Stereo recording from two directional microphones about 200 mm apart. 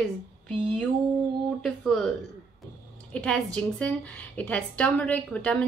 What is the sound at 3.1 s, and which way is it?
A woman's voice, 5° left (ahead or behind).